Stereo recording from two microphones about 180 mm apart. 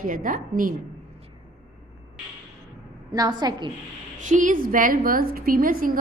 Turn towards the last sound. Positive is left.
turn(degrees=-50)  # may be behind; listen again after turning